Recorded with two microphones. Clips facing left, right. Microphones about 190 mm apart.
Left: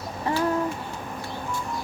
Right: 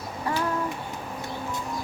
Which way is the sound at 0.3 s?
25° left (ahead or behind).